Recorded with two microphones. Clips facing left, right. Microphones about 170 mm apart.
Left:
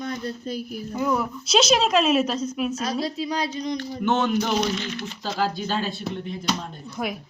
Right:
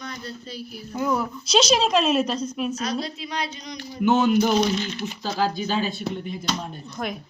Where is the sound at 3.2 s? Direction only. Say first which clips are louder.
Left 4 dB; 35° left (ahead or behind).